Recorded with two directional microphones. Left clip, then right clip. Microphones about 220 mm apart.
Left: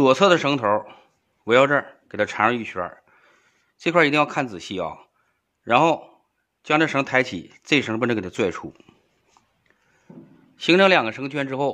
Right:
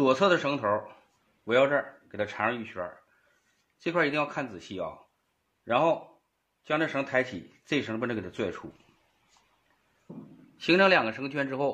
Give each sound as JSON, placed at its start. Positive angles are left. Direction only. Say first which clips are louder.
{"t": 0.0, "sound": "a man's voice", "louder": "left 7 dB", "side_deg": 45}
{"t": 10.6, "sound": "a man's voice", "louder": "left 6 dB", "side_deg": 35}